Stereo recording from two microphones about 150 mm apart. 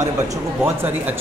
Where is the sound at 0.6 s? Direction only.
10° right (ahead or behind).